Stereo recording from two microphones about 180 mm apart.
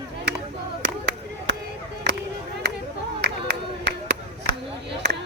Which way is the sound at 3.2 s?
75° right (ahead or behind).